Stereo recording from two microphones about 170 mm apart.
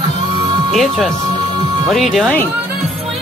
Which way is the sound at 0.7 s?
Centre (ahead or behind).